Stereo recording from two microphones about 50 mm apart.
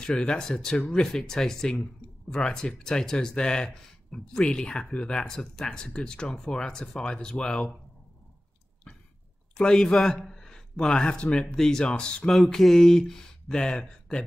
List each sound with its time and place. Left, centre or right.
0.1 s speech: centre
9.6 s speech: centre
11.3 s speech: centre
11.8 s speech: centre
12.5 s speech: centre